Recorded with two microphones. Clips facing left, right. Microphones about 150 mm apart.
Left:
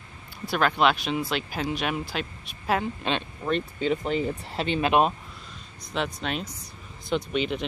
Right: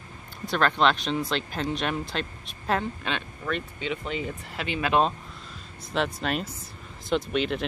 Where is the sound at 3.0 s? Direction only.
25° left (ahead or behind).